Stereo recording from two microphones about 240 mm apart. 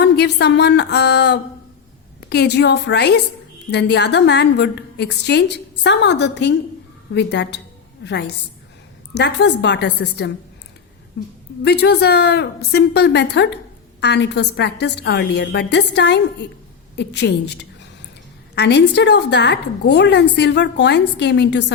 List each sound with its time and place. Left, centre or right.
0.0 s a woman's voice: left